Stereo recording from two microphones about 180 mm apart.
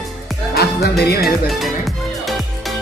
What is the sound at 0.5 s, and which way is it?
Music, 60° left (ahead or behind).